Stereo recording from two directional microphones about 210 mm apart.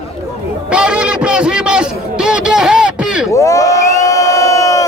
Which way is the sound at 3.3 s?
15° left (ahead or behind).